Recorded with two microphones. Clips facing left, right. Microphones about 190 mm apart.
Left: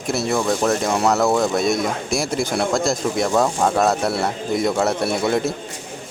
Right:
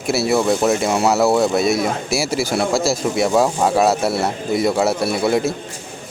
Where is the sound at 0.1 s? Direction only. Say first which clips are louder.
Right 4 dB; 10° right (ahead or behind).